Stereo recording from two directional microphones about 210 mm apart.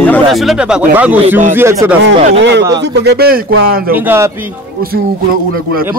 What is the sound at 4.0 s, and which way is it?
Speech, 10° right (ahead or behind).